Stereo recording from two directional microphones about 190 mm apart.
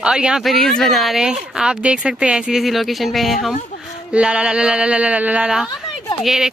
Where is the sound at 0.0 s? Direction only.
5° right (ahead or behind).